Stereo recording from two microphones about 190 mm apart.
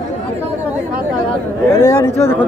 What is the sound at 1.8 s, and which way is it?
Speech, 15° left (ahead or behind).